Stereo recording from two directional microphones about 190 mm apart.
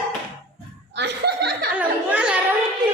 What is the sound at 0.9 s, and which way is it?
Speech, 60° right (ahead or behind).